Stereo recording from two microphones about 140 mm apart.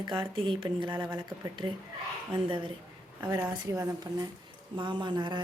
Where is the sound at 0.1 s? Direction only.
35° right (ahead or behind).